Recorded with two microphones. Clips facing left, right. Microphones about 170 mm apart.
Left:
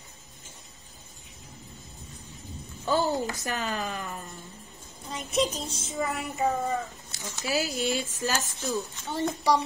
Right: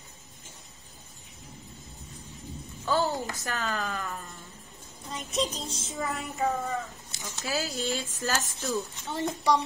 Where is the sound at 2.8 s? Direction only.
15° left (ahead or behind).